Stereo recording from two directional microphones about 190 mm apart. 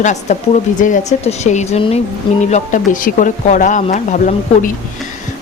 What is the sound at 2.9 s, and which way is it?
Speech, 45° left (ahead or behind).